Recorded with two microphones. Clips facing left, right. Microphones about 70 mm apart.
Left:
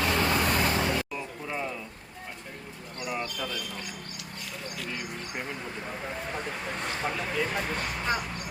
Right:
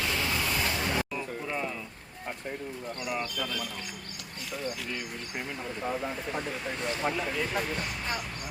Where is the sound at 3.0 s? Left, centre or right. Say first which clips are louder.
Left 1 dB; centre.